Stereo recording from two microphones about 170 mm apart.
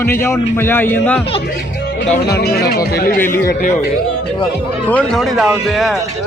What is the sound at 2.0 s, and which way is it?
Speech, 75° left (ahead or behind).